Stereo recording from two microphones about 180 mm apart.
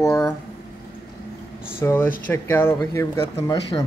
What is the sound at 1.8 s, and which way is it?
Speech, 15° left (ahead or behind).